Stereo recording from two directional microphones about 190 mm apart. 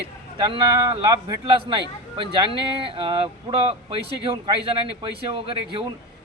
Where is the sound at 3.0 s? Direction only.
25° right (ahead or behind).